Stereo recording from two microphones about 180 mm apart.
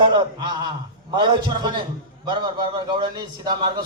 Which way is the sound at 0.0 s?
25° right (ahead or behind).